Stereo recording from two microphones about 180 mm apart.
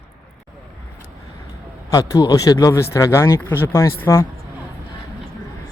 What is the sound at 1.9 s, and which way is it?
Speech, 20° left (ahead or behind).